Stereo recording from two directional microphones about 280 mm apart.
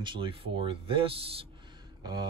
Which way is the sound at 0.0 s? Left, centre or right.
Centre.